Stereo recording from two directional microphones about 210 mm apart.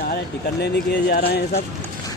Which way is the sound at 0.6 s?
50° left (ahead or behind).